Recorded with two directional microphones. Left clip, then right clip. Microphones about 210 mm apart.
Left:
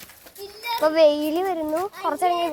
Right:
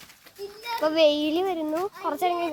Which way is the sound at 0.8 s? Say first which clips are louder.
Left 3 dB; centre (ahead or behind).